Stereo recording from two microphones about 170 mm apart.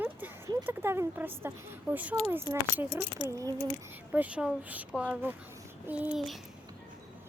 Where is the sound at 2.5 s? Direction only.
25° left (ahead or behind).